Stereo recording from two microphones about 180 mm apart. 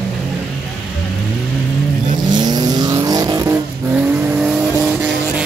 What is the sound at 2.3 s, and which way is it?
Vehicle, 25° right (ahead or behind).